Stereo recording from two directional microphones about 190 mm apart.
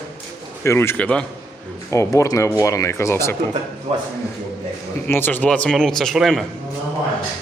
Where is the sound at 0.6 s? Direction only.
15° left (ahead or behind).